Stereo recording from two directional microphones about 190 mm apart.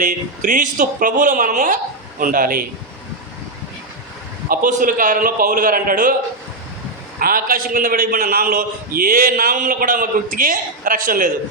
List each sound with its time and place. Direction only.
0.0 s a man's voice: 45° right (ahead or behind)
4.4 s a man's voice: 45° right (ahead or behind)
7.2 s a man's voice: 50° right (ahead or behind)